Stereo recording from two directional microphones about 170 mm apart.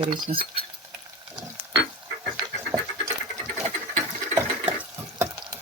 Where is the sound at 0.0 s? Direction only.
30° right (ahead or behind).